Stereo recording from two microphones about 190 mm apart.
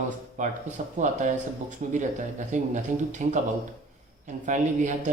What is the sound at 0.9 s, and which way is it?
Speech, 40° right (ahead or behind).